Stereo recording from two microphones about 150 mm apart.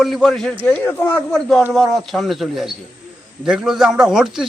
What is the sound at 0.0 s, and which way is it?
Speech, centre (ahead or behind).